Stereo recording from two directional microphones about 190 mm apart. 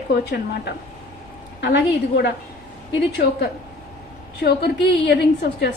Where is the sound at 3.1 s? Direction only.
55° left (ahead or behind).